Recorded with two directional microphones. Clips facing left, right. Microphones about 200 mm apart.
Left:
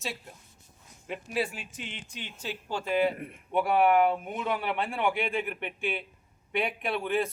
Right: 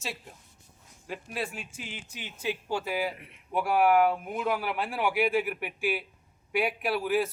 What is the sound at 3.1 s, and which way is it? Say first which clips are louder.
Speech: left 11 dB; 50° left (ahead or behind).